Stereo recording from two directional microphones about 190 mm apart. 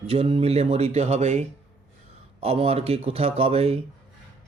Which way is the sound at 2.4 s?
30° right (ahead or behind).